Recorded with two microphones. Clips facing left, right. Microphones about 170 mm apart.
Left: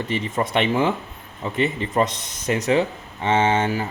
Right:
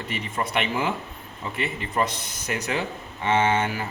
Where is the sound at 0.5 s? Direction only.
30° left (ahead or behind).